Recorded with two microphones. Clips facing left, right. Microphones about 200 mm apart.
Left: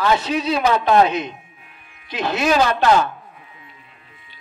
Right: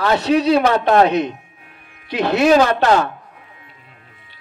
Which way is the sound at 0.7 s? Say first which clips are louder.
Right 2 dB; 40° right (ahead or behind).